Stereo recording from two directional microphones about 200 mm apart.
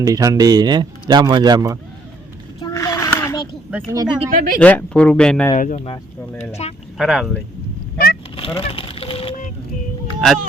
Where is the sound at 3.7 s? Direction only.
15° right (ahead or behind).